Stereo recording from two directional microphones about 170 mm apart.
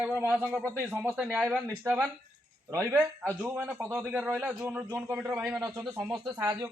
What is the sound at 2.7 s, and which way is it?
A man's voice, 15° right (ahead or behind).